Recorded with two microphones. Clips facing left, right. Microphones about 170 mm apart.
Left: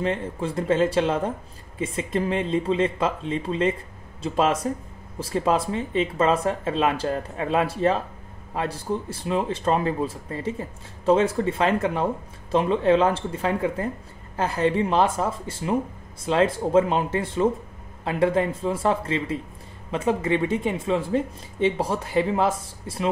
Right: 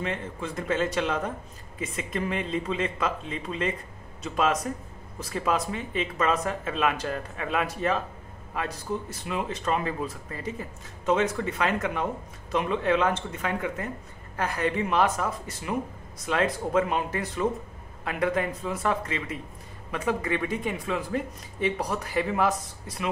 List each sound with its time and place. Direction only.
0.0 s speech: 30° left (ahead or behind)